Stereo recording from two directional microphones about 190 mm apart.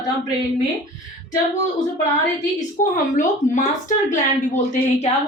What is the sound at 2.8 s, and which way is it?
A woman's voice, 40° left (ahead or behind).